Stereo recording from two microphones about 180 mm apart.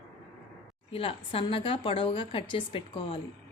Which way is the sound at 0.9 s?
30° left (ahead or behind).